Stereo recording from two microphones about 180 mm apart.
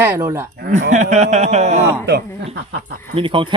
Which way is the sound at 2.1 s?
70° right (ahead or behind).